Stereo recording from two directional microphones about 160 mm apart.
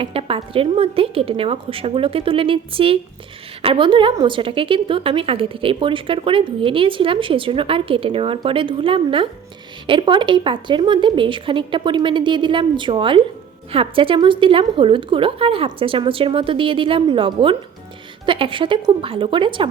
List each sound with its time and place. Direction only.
0.0 s a woman's voice: 35° right (ahead or behind)